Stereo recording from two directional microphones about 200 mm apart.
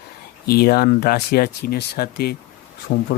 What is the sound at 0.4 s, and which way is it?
Speech, 50° left (ahead or behind).